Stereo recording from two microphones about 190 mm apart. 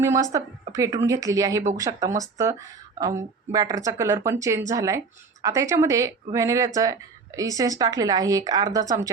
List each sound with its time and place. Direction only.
0.0 s a woman's voice: 15° right (ahead or behind)